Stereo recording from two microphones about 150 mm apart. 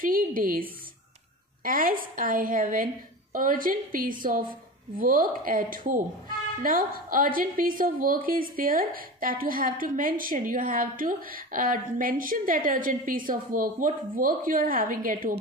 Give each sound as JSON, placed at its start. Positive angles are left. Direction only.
{"t": 0.0, "sound": "a woman's voice", "side_deg": -65}